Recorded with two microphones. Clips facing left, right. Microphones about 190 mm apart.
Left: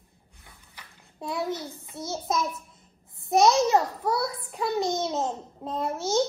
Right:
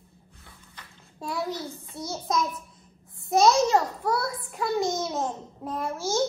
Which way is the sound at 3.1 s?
20° left (ahead or behind).